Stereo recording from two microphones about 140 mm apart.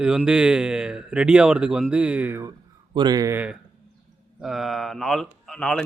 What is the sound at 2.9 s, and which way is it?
Speech, 30° right (ahead or behind).